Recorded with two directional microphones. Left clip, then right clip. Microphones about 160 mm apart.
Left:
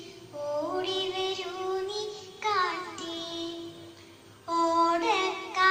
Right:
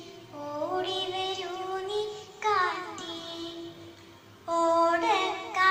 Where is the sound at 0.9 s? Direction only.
40° right (ahead or behind).